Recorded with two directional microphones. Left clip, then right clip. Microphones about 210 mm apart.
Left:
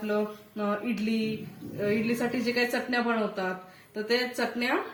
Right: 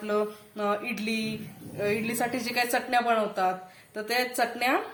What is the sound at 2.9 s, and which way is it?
A woman's voice, 60° right (ahead or behind).